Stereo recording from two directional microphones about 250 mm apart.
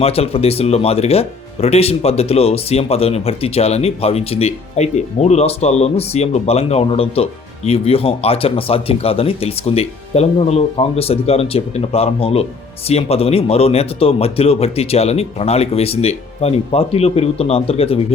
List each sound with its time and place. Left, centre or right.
0.0 s speech: left